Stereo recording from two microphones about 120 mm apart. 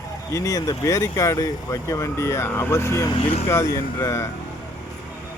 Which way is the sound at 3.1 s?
60° left (ahead or behind).